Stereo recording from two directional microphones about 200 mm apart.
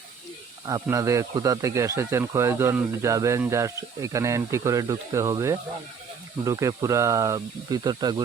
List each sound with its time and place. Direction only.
0.6 s speech: 15° right (ahead or behind)